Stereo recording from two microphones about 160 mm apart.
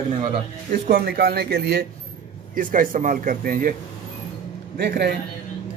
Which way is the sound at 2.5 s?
60° right (ahead or behind).